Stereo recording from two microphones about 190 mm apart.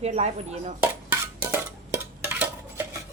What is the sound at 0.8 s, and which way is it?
Dishes, 10° right (ahead or behind).